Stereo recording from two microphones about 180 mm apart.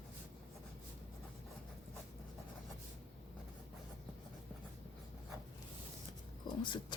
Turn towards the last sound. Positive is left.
turn(degrees=25)  # may be behind; listen again after turning